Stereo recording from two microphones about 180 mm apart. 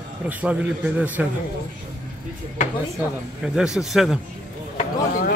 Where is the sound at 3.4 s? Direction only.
5° right (ahead or behind).